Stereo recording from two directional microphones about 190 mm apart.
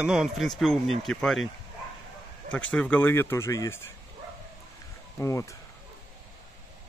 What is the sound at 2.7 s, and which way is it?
Speech, 10° left (ahead or behind).